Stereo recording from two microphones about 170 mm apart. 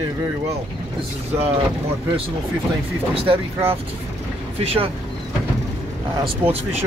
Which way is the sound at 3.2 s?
35° right (ahead or behind).